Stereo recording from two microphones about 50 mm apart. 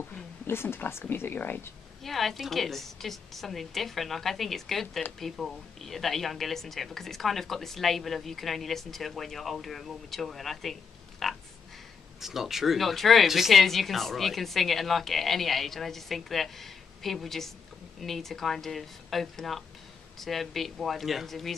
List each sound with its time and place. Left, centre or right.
0.5 s speech: left
2.0 s speech: centre